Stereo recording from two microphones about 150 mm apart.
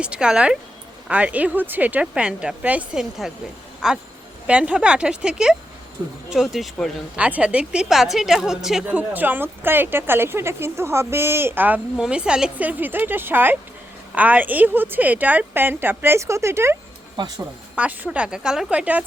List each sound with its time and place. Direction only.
0.0 s a woman's voice: 5° right (ahead or behind); by 17.4 s 25° right (ahead or behind)
17.7 s a woman's voice: 10° right (ahead or behind)